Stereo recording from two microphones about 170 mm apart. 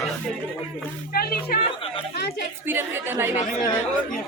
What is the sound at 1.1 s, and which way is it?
Music, 65° left (ahead or behind).